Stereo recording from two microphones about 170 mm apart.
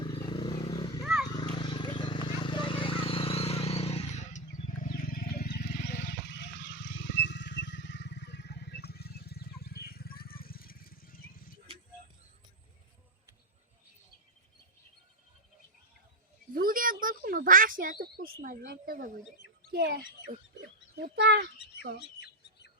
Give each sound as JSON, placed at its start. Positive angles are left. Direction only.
{"t": 0.0, "sound": "vehicle", "side_deg": 30}
{"t": 1.4, "sound": "a sound", "side_deg": 25}
{"t": 16.6, "sound": "speech", "side_deg": -55}
{"t": 19.7, "sound": "speech", "side_deg": -70}
{"t": 21.9, "sound": "bird", "side_deg": 80}